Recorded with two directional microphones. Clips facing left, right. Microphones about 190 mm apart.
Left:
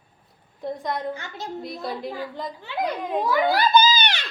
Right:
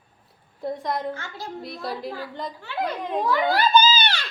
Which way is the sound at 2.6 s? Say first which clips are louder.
Left 1 dB; 15° left (ahead or behind).